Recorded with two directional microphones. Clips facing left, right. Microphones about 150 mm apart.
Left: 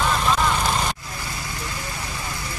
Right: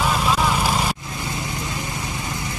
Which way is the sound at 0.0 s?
5° right (ahead or behind).